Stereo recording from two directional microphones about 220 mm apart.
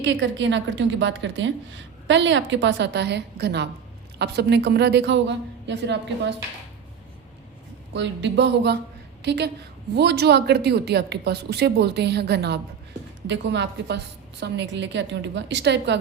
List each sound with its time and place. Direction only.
0.0 s a woman's voice: 55° right (ahead or behind)
7.9 s a woman's voice: 55° right (ahead or behind)